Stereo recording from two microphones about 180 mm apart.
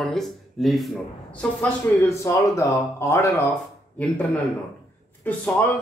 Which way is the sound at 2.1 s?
15° left (ahead or behind).